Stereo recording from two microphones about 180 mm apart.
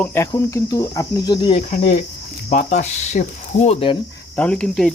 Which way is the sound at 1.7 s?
45° left (ahead or behind).